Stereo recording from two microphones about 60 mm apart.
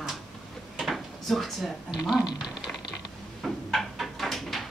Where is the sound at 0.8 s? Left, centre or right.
Centre.